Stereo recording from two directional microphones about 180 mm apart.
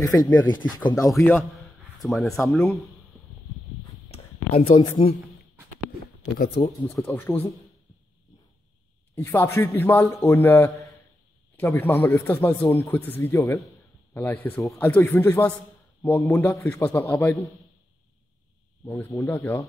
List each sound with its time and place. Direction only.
0.0 s speech: 20° left (ahead or behind)
2.0 s speech: centre (ahead or behind)
4.6 s speech: 30° left (ahead or behind)
6.3 s speech: 50° left (ahead or behind)
7.0 s a man's voice: 15° left (ahead or behind)
9.1 s a man's voice: 10° left (ahead or behind)
13.6 s a sound: centre (ahead or behind)
14.2 s a man's voice: 10° left (ahead or behind)
18.9 s a man's voice: 15° left (ahead or behind)